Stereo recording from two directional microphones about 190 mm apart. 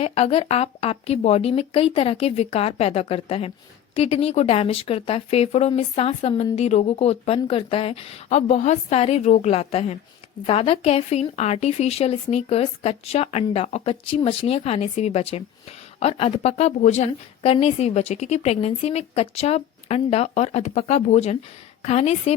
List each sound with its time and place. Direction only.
0.0 s a woman's voice: 30° left (ahead or behind)